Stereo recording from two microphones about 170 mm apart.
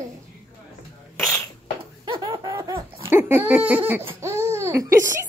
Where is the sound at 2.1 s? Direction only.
30° right (ahead or behind).